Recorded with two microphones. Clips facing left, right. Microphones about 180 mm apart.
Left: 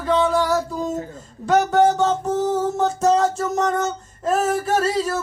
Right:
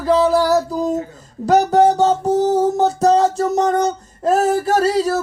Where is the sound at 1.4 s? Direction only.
35° right (ahead or behind).